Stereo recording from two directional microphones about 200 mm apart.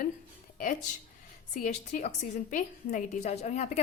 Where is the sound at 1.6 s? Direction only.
40° left (ahead or behind).